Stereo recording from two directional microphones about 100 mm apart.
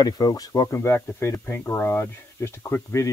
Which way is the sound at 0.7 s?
25° left (ahead or behind).